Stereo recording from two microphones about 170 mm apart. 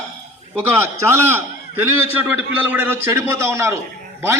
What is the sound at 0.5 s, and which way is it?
A man's voice, 15° right (ahead or behind).